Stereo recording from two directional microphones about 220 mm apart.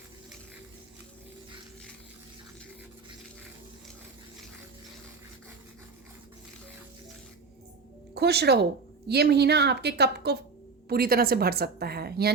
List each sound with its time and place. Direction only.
8.1 s a woman's voice: 45° right (ahead or behind)